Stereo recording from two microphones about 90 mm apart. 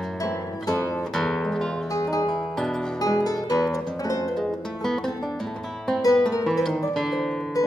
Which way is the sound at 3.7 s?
40° left (ahead or behind).